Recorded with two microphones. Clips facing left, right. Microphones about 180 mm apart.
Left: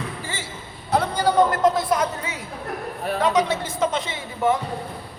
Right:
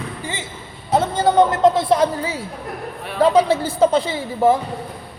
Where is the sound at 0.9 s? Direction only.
25° right (ahead or behind).